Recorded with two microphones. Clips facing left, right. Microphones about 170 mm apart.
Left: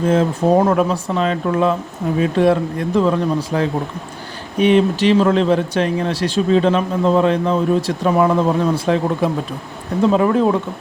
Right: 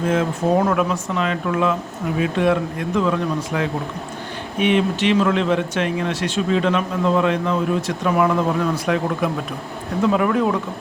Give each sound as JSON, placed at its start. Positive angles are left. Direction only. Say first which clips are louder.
{"t": 0.0, "sound": "speech", "louder": "left 4 dB", "side_deg": 30}